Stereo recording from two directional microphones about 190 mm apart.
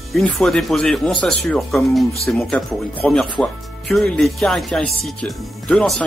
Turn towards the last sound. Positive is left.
turn(degrees=0)  # may be behind; listen again after turning